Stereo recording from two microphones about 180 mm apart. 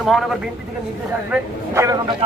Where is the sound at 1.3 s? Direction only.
10° right (ahead or behind).